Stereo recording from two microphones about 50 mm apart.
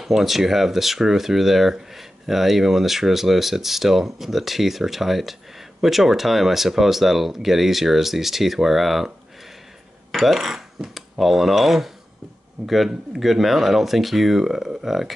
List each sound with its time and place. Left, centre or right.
0.0 s speech: centre
10.1 s speech: centre